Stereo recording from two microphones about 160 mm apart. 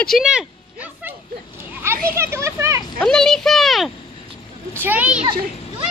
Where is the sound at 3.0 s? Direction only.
5° left (ahead or behind).